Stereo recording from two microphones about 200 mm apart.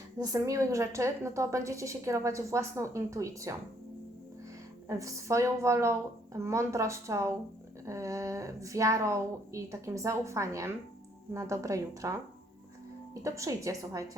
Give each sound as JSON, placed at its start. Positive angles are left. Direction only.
{"t": 0.2, "sound": "a woman's voice", "side_deg": -15}
{"t": 4.9, "sound": "a woman's voice", "side_deg": -15}
{"t": 13.2, "sound": "a woman's voice", "side_deg": -15}